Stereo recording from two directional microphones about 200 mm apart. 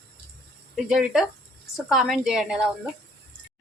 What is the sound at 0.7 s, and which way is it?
A woman's voice, centre (ahead or behind).